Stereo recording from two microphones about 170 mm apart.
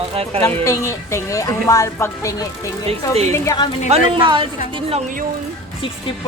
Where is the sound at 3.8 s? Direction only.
35° right (ahead or behind).